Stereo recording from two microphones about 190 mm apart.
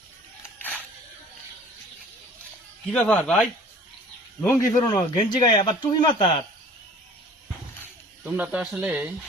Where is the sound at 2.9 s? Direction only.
5° left (ahead or behind); by 5.9 s 25° left (ahead or behind).